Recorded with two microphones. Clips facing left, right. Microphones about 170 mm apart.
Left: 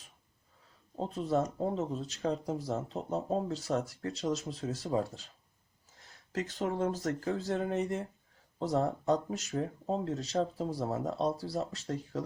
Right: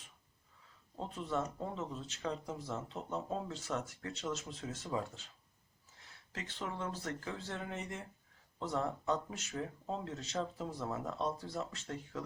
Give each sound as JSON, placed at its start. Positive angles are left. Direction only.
{"t": 0.9, "sound": "speech", "side_deg": 35}
{"t": 6.3, "sound": "speech", "side_deg": 40}